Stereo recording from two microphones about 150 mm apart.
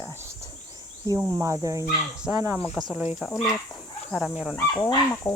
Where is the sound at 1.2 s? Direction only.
20° right (ahead or behind).